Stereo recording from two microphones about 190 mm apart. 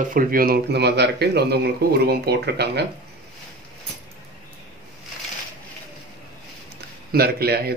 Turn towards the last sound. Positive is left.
turn(degrees=-55)  # may be behind; listen again after turning